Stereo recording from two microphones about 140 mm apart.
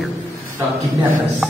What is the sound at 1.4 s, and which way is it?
Music, centre (ahead or behind).